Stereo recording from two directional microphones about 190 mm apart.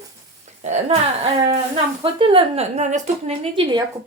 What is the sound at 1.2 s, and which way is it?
A woman's voice, 30° right (ahead or behind).